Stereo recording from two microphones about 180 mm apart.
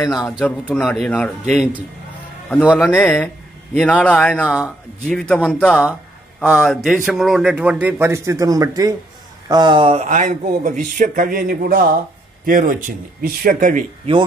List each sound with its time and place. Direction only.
0.1 s a man's voice: centre (ahead or behind); by 10.0 s 30° right (ahead or behind)
10.0 s speech: 40° right (ahead or behind)